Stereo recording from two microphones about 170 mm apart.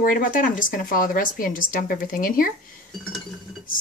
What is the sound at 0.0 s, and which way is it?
Speech, 55° left (ahead or behind).